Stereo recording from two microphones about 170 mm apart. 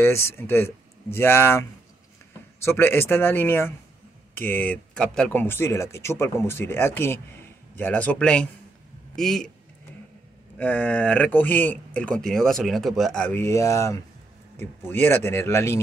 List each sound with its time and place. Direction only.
0.0 s speech: 15° left (ahead or behind)
10.6 s speech: 10° left (ahead or behind)
13.4 s speech: 20° left (ahead or behind)